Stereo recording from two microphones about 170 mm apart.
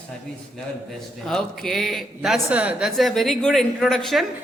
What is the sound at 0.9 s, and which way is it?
A man's voice, centre (ahead or behind).